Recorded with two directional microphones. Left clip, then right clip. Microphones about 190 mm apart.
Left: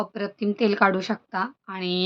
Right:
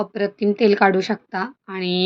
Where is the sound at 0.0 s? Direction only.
20° right (ahead or behind).